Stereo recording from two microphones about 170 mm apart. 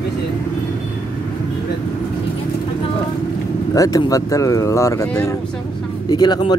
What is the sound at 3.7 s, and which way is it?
Speech, 20° left (ahead or behind).